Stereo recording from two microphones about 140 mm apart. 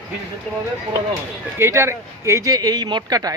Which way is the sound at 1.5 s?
20° right (ahead or behind).